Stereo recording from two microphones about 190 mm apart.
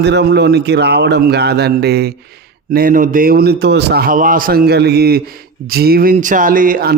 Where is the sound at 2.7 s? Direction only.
45° right (ahead or behind).